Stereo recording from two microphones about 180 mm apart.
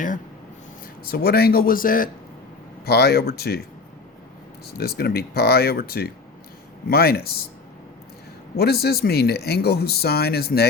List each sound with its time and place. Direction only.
1.0 s speech: 55° left (ahead or behind)
2.8 s speech: 60° left (ahead or behind)
4.6 s speech: 60° left (ahead or behind)
8.5 s speech: 60° left (ahead or behind)